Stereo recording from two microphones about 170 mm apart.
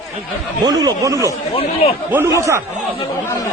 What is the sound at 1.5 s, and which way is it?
Speech, 35° left (ahead or behind).